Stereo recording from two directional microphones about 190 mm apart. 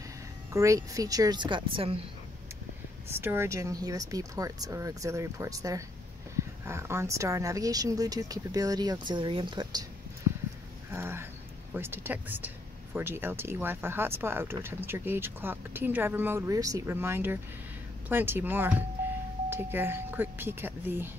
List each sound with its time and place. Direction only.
0.5 s speech: 15° right (ahead or behind)
3.1 s speech: 10° right (ahead or behind)
10.9 s a sound: 15° right (ahead or behind)
11.7 s speech: 10° right (ahead or behind)